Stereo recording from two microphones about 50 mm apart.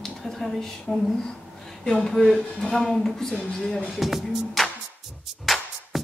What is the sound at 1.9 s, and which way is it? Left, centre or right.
A woman's voice, centre.